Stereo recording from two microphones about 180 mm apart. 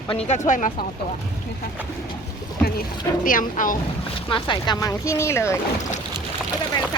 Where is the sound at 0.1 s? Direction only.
35° left (ahead or behind).